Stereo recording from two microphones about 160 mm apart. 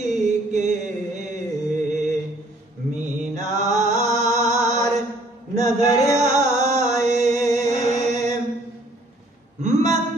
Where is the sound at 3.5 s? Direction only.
45° right (ahead or behind).